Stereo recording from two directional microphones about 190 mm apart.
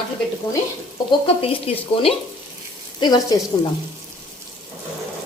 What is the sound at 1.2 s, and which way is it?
Speech, 30° left (ahead or behind).